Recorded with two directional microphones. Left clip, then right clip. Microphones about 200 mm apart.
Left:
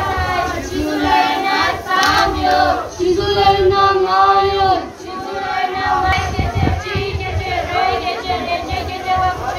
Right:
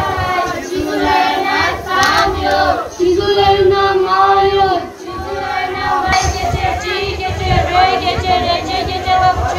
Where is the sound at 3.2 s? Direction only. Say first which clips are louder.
Right 1 dB; 50° left (ahead or behind).